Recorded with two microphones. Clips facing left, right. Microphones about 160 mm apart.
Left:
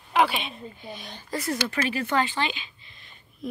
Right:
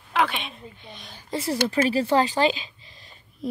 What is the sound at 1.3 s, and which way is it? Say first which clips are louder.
Speech: right 4 dB; 30° right (ahead or behind).